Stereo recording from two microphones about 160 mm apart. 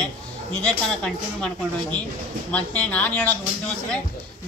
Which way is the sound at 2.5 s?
10° left (ahead or behind).